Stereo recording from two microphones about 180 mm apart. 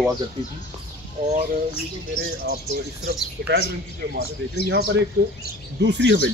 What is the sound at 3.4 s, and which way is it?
Speech, 60° right (ahead or behind).